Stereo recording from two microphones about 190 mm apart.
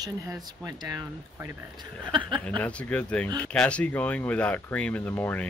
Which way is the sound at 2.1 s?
25° right (ahead or behind).